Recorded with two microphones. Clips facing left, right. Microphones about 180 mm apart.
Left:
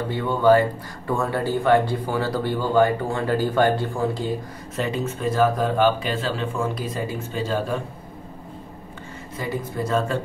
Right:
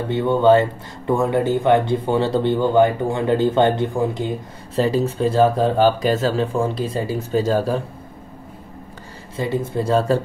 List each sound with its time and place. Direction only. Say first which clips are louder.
0.1 s speech: right 3 dB; 25° right (ahead or behind)
4.7 s speech: right 7 dB; 35° right (ahead or behind)
9.4 s speech: right 5 dB; 25° right (ahead or behind)